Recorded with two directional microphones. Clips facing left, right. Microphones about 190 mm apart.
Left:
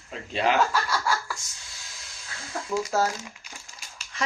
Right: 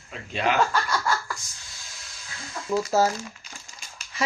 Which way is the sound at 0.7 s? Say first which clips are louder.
Right 1 dB; 10° left (ahead or behind).